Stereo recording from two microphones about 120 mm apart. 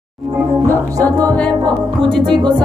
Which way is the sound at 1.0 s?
30° right (ahead or behind).